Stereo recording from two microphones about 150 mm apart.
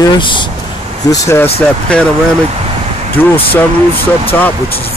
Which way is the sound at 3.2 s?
15° left (ahead or behind).